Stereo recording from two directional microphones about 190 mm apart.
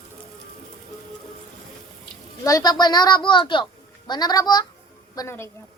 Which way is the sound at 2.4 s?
20° left (ahead or behind).